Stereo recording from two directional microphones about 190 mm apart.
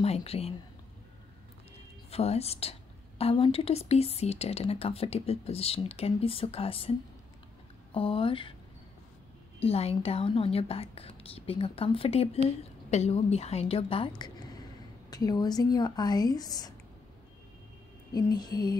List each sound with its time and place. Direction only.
0.0 s speech: 30° left (ahead or behind)
2.0 s speech: 30° left (ahead or behind)
7.9 s speech: 25° left (ahead or behind)
9.6 s speech: 30° left (ahead or behind)
18.1 s speech: 20° left (ahead or behind)